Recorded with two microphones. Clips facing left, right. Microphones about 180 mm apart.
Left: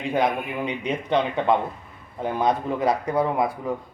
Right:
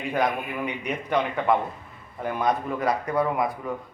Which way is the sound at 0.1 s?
25° left (ahead or behind).